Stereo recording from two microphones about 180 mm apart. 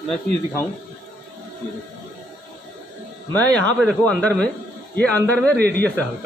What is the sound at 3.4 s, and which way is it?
Speech, 10° left (ahead or behind).